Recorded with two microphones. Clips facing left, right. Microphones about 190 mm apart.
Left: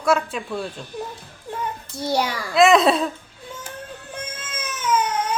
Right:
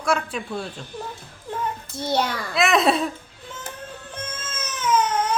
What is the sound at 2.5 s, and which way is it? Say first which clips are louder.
Speech: left 5 dB; centre (ahead or behind).